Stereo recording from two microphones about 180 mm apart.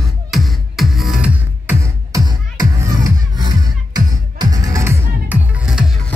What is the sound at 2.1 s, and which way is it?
Music, 20° right (ahead or behind).